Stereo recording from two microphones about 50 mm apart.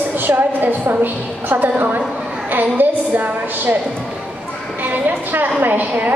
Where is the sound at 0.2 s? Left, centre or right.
Right.